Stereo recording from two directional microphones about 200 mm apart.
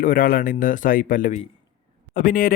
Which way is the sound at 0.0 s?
45° left (ahead or behind).